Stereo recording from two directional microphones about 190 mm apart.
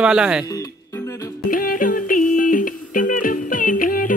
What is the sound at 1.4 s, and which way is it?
Music, 45° left (ahead or behind).